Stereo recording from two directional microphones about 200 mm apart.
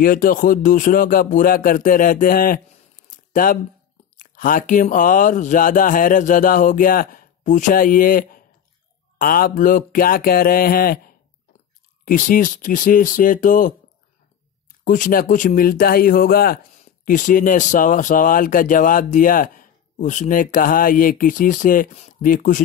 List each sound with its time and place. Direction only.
0.0 s speech: 45° left (ahead or behind)
3.1 s a sound: 45° left (ahead or behind)
4.2 s speech: 45° left (ahead or behind)
14.9 s speech: 45° left (ahead or behind)